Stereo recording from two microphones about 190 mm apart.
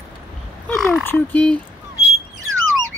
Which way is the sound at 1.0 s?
10° left (ahead or behind).